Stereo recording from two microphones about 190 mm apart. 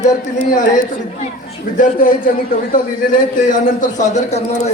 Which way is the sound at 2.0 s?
50° left (ahead or behind).